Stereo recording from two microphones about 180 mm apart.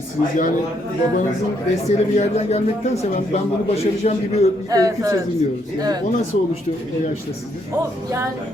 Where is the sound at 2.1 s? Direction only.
40° left (ahead or behind).